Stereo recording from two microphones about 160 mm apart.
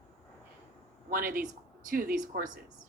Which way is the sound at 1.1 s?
60° right (ahead or behind).